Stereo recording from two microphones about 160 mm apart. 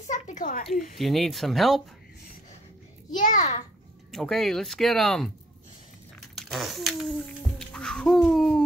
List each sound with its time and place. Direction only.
0.0 s a sound: 50° left (ahead or behind)
0.9 s speech: centre (ahead or behind)
3.2 s a child's voice: 50° left (ahead or behind)
4.1 s speech: centre (ahead or behind)
6.3 s speech: centre (ahead or behind)